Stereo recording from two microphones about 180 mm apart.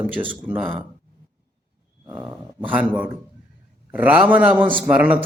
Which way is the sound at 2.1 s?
10° right (ahead or behind).